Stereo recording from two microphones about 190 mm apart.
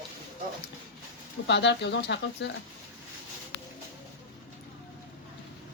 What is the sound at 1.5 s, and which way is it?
Speech, 65° left (ahead or behind).